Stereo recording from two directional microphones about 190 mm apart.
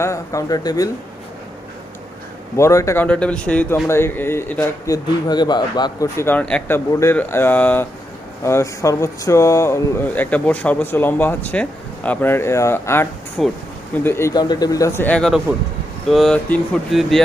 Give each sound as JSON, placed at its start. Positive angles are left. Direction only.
{"t": 0.0, "sound": "speech", "side_deg": 15}
{"t": 2.6, "sound": "speech", "side_deg": 15}
{"t": 5.3, "sound": "speech", "side_deg": 20}
{"t": 13.4, "sound": "speech", "side_deg": 0}
{"t": 13.9, "sound": "speech", "side_deg": 10}